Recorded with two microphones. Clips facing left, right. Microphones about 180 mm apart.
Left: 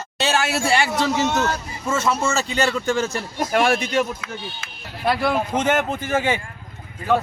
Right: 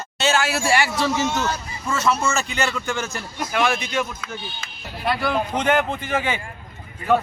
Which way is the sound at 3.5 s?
45° left (ahead or behind).